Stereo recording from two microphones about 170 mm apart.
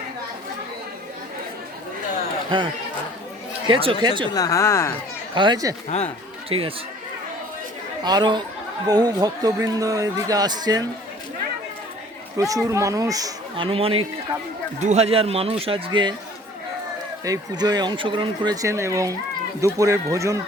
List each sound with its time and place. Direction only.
2.5 s a man's voice: 30° right (ahead or behind)
3.7 s a man's voice: 30° right (ahead or behind)
4.3 s speech: 20° left (ahead or behind)
5.3 s a man's voice: 25° right (ahead or behind)
5.9 s speech: 40° left (ahead or behind)
6.5 s a man's voice: 35° right (ahead or behind)
8.0 s a man's voice: 25° right (ahead or behind)
12.4 s a man's voice: 20° right (ahead or behind)
13.7 s a man's voice: 35° right (ahead or behind)
17.2 s a man's voice: 20° right (ahead or behind)